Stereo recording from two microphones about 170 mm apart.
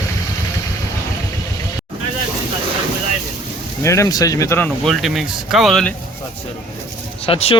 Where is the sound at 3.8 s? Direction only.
15° left (ahead or behind); by 5.9 s centre (ahead or behind).